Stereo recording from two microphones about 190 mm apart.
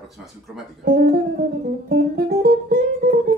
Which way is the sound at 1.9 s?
55° right (ahead or behind).